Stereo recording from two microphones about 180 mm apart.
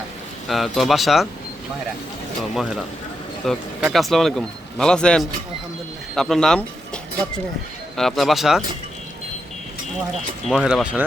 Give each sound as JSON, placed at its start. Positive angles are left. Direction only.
{"t": 0.4, "sound": "speech", "side_deg": 0}
{"t": 2.4, "sound": "speech", "side_deg": 0}
{"t": 10.5, "sound": "speech", "side_deg": -5}